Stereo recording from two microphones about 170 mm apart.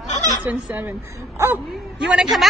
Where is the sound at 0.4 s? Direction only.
10° right (ahead or behind).